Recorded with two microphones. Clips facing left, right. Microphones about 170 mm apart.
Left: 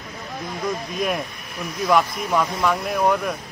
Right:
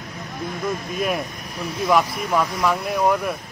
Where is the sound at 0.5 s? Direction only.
50° right (ahead or behind).